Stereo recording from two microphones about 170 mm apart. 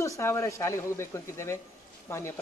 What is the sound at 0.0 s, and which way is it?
Speech, 15° left (ahead or behind).